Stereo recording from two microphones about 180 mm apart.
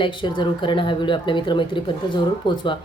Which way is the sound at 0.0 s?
25° left (ahead or behind).